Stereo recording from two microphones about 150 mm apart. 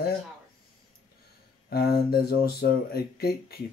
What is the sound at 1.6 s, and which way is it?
Speech, 90° left.